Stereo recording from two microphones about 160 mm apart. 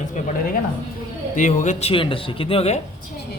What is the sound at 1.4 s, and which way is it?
Speech, 50° left (ahead or behind).